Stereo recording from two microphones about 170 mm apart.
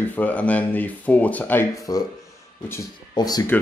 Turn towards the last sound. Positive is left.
turn(degrees=25)  # may be behind; listen again after turning